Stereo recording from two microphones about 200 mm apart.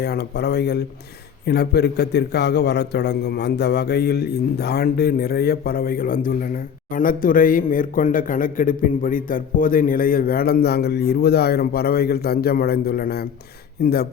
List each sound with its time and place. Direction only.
0.0 s a man's voice: 55° left (ahead or behind)